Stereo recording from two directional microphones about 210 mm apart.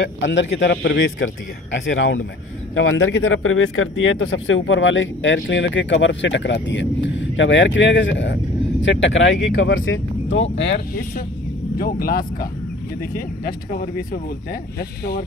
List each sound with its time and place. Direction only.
0.0 s speech: 60° left (ahead or behind)